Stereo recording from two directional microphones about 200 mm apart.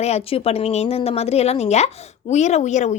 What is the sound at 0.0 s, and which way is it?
A woman's voice, 30° left (ahead or behind).